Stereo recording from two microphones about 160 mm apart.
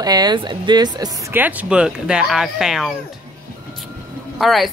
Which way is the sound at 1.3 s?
10° right (ahead or behind).